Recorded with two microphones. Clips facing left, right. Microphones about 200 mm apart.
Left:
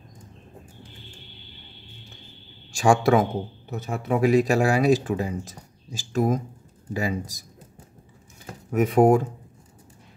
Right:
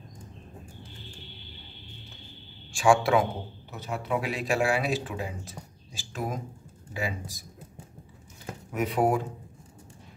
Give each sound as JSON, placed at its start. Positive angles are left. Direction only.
{"t": 2.7, "sound": "speech", "side_deg": 40}
{"t": 8.7, "sound": "speech", "side_deg": 45}